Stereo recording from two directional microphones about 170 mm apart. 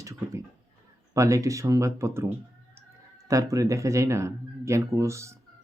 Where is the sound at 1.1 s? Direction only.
20° right (ahead or behind).